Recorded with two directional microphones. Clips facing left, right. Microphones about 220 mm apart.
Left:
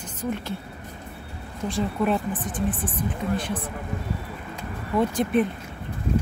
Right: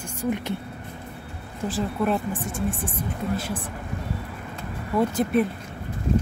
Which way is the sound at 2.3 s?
25° right (ahead or behind).